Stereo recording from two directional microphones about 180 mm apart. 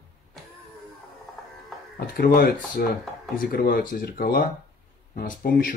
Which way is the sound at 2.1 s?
55° left (ahead or behind).